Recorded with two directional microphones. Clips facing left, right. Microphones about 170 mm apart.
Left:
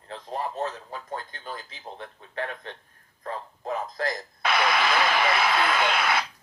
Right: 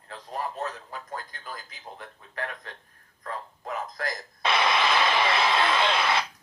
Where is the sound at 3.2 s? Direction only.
25° left (ahead or behind).